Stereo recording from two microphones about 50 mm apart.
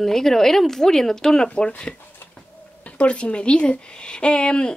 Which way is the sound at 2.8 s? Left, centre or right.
Left.